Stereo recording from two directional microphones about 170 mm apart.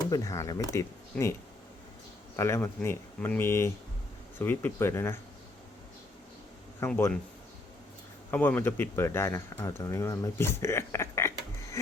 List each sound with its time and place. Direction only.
0.1 s speech: 20° left (ahead or behind)
6.7 s a man's voice: 15° left (ahead or behind)
8.3 s speech: 10° left (ahead or behind)